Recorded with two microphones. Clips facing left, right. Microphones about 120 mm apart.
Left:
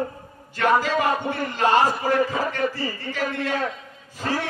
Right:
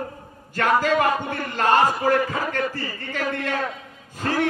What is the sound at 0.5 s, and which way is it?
A man's voice, 50° right (ahead or behind).